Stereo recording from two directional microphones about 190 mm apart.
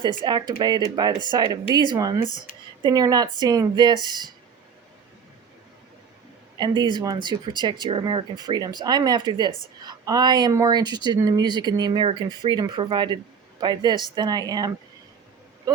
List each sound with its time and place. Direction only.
0.3 s speech: 20° right (ahead or behind)
6.6 s speech: 25° right (ahead or behind)
15.7 s a sound: 20° right (ahead or behind)